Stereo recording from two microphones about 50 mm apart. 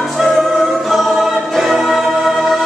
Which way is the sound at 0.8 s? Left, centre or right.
Centre.